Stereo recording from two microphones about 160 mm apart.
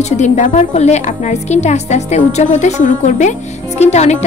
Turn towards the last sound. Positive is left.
turn(degrees=45)  # may be behind; listen again after turning